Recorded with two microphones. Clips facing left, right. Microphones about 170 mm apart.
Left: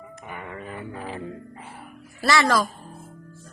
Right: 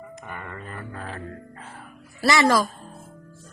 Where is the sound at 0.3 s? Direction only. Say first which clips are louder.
Left 3 dB; 10° left (ahead or behind).